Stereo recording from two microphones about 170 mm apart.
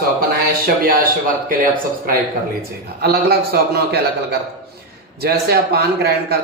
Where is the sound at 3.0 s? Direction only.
70° right (ahead or behind).